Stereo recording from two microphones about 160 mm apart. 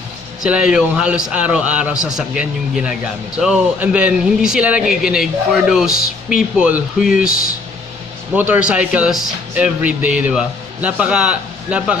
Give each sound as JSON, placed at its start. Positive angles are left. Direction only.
{"t": 0.4, "sound": "a man's voice", "side_deg": -5}
{"t": 7.2, "sound": "speech", "side_deg": 60}
{"t": 8.4, "sound": "a man's voice", "side_deg": -10}